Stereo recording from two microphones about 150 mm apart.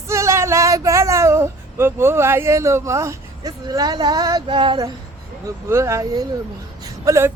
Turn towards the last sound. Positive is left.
turn(degrees=-20)  # may be behind; listen again after turning